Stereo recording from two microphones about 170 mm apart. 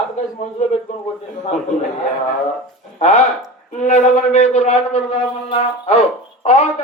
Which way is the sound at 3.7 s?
45° left (ahead or behind).